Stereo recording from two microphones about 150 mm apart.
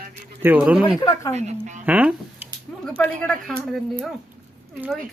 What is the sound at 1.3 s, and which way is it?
Speech, 55° right (ahead or behind).